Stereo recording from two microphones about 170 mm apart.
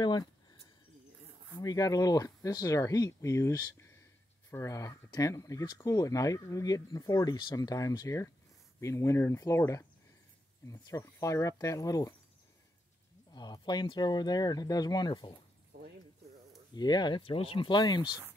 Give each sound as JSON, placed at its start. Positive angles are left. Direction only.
{"t": 0.0, "sound": "speech", "side_deg": 25}
{"t": 1.6, "sound": "speech", "side_deg": 20}
{"t": 13.3, "sound": "speech", "side_deg": 25}
{"t": 16.7, "sound": "speech", "side_deg": 25}